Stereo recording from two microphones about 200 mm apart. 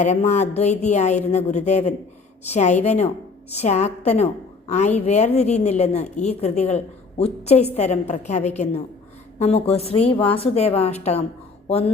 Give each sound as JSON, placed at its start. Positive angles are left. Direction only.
{"t": 0.0, "sound": "a woman's voice", "side_deg": 35}